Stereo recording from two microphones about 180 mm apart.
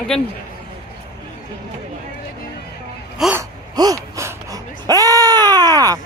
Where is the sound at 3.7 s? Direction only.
20° right (ahead or behind).